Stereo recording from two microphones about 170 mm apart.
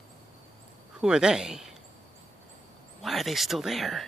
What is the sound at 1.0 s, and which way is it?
Speech, 5° right (ahead or behind).